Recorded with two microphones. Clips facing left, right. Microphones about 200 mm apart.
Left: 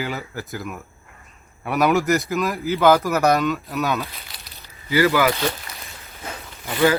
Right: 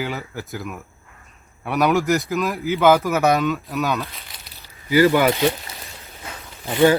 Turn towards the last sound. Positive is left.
turn(degrees=-25)  # may be behind; listen again after turning